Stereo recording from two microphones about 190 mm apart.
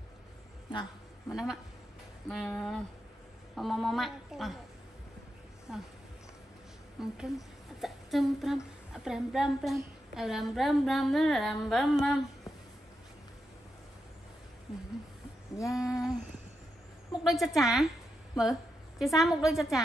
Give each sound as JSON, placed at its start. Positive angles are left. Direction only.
{"t": 1.3, "sound": "a woman's voice", "side_deg": -5}
{"t": 5.7, "sound": "a woman's voice", "side_deg": 0}
{"t": 7.0, "sound": "a woman's voice", "side_deg": -5}
{"t": 15.7, "sound": "a sound", "side_deg": 0}
{"t": 17.2, "sound": "a woman's voice", "side_deg": 0}